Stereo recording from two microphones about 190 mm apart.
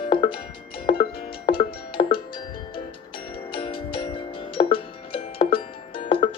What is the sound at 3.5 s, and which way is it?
Music, 25° left (ahead or behind).